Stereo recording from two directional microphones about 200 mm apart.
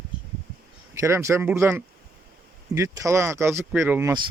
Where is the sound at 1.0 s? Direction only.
15° right (ahead or behind).